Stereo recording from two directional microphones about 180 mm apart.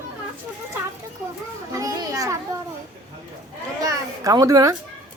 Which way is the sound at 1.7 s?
20° right (ahead or behind).